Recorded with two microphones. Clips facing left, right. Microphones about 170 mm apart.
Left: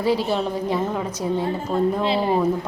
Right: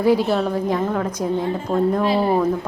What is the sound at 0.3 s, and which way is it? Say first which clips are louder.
Speech: right 2 dB; 5° left (ahead or behind).